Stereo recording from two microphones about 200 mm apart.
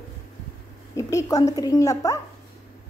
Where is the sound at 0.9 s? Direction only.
15° left (ahead or behind).